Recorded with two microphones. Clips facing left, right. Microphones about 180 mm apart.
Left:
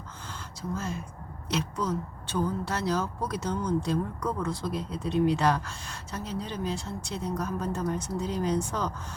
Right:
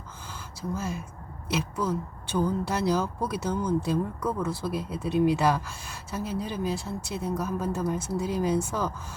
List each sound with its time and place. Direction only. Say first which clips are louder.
0.7 s speech: right 1 dB; 10° right (ahead or behind)